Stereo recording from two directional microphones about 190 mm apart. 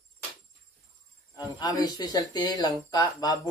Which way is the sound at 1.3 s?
20° left (ahead or behind).